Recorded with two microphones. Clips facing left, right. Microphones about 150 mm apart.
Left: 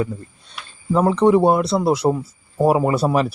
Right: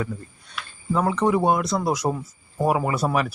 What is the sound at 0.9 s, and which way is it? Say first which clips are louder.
Speech: left 6 dB; 30° left (ahead or behind).